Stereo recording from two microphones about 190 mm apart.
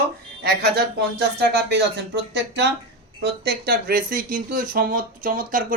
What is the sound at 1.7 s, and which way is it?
Speech, 65° right (ahead or behind).